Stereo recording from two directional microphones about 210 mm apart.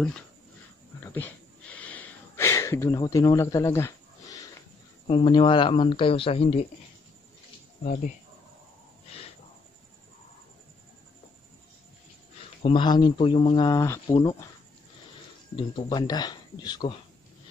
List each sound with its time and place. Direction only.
1.0 s a sound: 10° left (ahead or behind)
5.0 s speech: 25° left (ahead or behind)
7.8 s speech: 40° left (ahead or behind)
12.6 s speech: 25° left (ahead or behind)
15.5 s speech: 20° left (ahead or behind)